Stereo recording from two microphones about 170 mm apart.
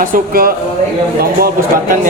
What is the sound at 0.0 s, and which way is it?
Speech, 60° right (ahead or behind).